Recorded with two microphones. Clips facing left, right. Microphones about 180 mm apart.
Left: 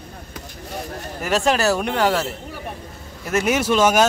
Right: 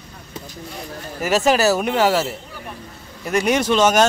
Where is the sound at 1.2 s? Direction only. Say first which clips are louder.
Right 3 dB; 5° right (ahead or behind).